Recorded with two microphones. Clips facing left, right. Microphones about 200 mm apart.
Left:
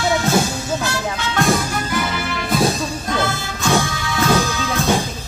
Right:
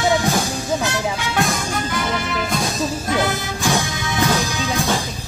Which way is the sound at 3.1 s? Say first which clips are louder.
Left 1 dB; 15° right (ahead or behind).